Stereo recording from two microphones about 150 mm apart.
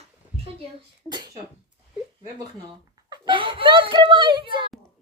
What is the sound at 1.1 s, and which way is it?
Speech, 30° right (ahead or behind).